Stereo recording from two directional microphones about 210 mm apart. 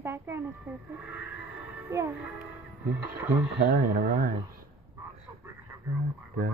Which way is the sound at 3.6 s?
45° right (ahead or behind).